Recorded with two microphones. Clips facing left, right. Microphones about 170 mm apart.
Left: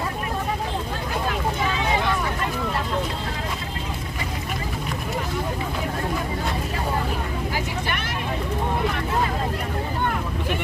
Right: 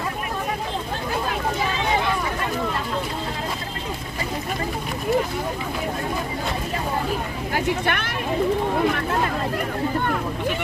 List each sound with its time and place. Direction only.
7.5 s vehicle: 55° right (ahead or behind)